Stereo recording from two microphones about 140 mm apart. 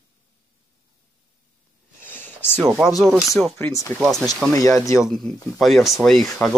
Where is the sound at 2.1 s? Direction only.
15° left (ahead or behind).